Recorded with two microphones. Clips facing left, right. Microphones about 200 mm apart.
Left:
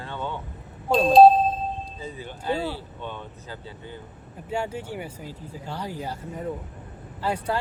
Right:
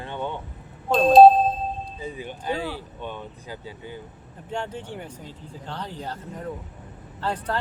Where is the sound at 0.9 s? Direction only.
Centre (ahead or behind).